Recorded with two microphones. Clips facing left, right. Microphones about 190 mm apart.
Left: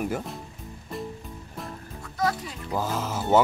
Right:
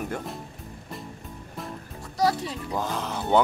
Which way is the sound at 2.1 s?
35° right (ahead or behind).